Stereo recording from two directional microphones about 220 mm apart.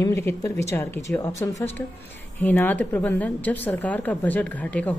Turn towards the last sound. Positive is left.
turn(degrees=5)  # may be behind; listen again after turning